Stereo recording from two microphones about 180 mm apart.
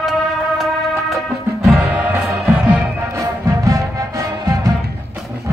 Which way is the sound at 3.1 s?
20° right (ahead or behind).